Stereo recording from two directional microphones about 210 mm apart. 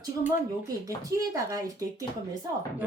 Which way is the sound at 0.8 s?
15° right (ahead or behind).